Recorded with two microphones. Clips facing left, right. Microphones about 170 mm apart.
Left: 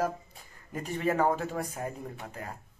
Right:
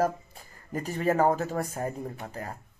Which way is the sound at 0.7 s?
40° right (ahead or behind).